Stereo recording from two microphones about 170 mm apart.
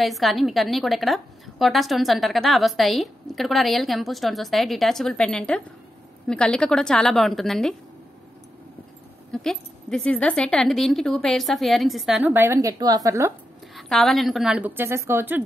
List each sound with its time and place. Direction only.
0.0 s a woman's voice: centre (ahead or behind)
9.3 s a woman's voice: 5° left (ahead or behind); by 13.3 s 20° right (ahead or behind)
13.7 s a woman's voice: centre (ahead or behind)